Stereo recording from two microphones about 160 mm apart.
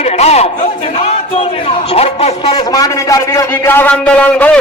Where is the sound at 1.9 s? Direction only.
40° left (ahead or behind).